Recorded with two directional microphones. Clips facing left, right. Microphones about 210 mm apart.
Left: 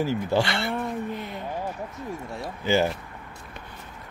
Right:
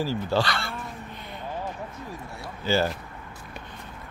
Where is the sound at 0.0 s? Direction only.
20° left (ahead or behind).